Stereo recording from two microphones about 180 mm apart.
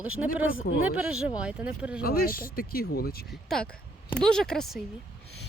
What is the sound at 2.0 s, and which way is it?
Speech, 55° left (ahead or behind).